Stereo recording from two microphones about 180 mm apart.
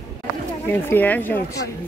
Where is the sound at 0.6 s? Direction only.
10° left (ahead or behind).